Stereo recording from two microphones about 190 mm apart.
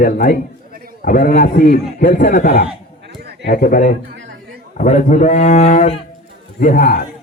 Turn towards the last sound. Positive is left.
turn(degrees=50)  # may be behind; listen again after turning